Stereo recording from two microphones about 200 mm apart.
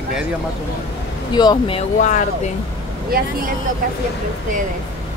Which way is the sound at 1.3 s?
20° left (ahead or behind).